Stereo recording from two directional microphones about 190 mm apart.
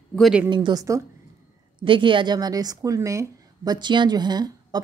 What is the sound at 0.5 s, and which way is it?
A woman's voice, 25° right (ahead or behind).